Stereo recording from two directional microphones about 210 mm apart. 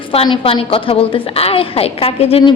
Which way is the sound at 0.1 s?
25° left (ahead or behind).